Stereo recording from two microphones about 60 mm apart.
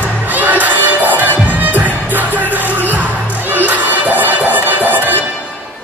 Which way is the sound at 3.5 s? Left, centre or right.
Right.